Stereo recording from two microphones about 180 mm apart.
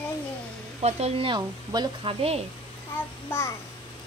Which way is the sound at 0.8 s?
35° right (ahead or behind).